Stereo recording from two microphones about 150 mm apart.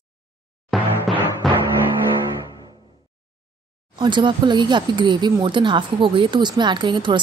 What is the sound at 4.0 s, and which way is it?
A woman's voice, 30° right (ahead or behind).